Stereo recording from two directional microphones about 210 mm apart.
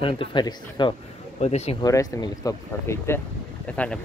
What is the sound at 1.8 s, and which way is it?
Speech, 15° left (ahead or behind).